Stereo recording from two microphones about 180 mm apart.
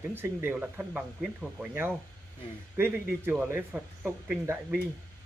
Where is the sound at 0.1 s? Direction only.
10° right (ahead or behind).